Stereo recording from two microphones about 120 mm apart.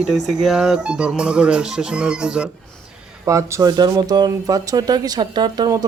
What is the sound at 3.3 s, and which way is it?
Speech, 25° right (ahead or behind).